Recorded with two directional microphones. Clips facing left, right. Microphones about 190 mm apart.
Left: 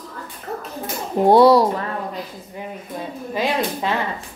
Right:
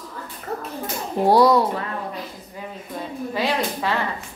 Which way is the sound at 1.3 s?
30° left (ahead or behind).